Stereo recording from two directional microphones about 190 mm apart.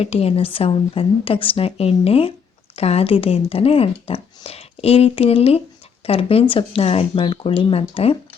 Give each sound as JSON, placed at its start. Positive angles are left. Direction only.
{"t": 0.0, "sound": "speech", "side_deg": 30}